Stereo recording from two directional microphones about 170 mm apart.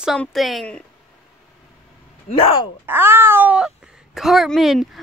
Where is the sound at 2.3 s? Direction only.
45° left (ahead or behind).